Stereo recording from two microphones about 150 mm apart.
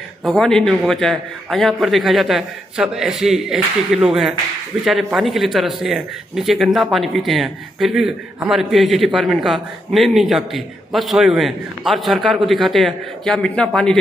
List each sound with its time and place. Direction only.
0.2 s speech: centre (ahead or behind)